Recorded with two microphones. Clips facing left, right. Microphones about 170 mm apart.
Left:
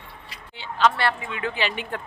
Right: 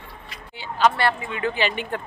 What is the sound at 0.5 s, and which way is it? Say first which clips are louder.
Speech: right 1 dB; 5° right (ahead or behind).